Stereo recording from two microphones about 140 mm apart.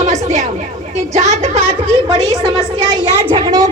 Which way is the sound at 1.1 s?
55° right (ahead or behind).